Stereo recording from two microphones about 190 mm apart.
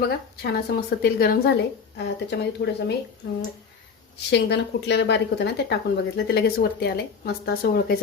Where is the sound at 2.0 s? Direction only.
65° left (ahead or behind).